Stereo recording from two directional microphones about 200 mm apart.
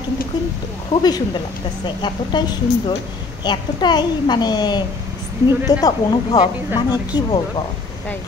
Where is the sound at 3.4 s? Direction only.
20° left (ahead or behind).